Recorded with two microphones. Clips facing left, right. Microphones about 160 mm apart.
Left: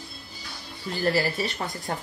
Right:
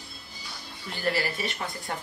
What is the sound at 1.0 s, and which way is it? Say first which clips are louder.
Speech: left 3 dB; 40° left (ahead or behind).